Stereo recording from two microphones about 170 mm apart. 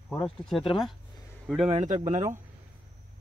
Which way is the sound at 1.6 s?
40° right (ahead or behind).